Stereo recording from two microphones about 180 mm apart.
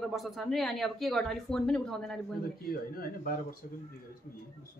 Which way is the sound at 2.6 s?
55° left (ahead or behind).